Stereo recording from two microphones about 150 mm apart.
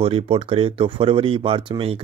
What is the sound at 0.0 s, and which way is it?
Speech, 40° right (ahead or behind).